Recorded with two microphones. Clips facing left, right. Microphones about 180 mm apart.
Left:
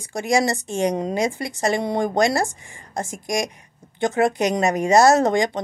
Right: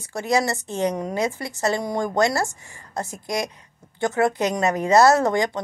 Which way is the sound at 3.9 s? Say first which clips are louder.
Left 1 dB; 20° left (ahead or behind).